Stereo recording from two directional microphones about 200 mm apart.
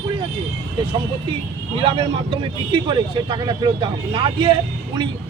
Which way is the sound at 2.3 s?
25° right (ahead or behind).